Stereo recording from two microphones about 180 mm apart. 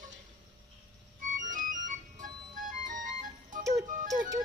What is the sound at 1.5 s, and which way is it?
Music, 50° right (ahead or behind).